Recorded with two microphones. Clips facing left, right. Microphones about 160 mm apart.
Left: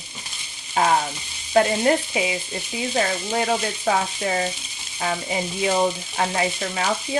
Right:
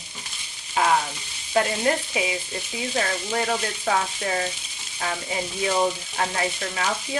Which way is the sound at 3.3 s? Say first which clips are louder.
Left 3 dB; 20° left (ahead or behind).